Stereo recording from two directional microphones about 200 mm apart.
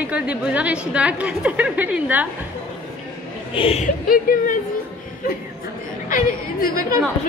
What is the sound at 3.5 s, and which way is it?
Speech, 30° left (ahead or behind).